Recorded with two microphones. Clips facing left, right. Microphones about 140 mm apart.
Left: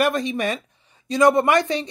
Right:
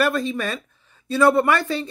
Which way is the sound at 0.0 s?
15° left (ahead or behind).